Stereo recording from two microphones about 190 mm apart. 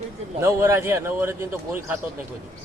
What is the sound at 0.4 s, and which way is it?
Speech, 15° right (ahead or behind).